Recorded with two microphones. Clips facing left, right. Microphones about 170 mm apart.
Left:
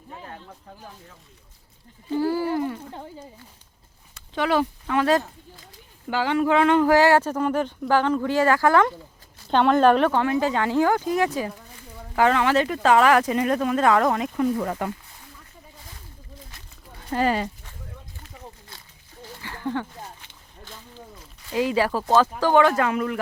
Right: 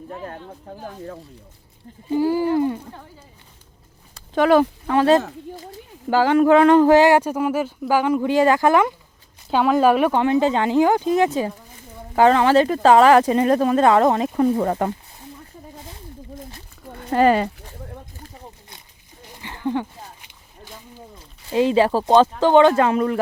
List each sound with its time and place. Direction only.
0.3 s speech: 50° right (ahead or behind)
2.0 s speech: 15° right (ahead or behind)
4.1 s a sound: 50° right (ahead or behind)
4.9 s speech: 30° right (ahead or behind)
6.1 s speech: 45° right (ahead or behind)
6.8 s speech: 20° right (ahead or behind)
9.5 s speech: 5° right (ahead or behind); by 14.9 s 35° right (ahead or behind)
16.8 s a sound: 60° right (ahead or behind)
19.3 s a sound: 20° right (ahead or behind)
21.5 s speech: 25° right (ahead or behind)